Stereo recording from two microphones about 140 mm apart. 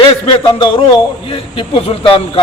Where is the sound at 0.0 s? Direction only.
40° left (ahead or behind).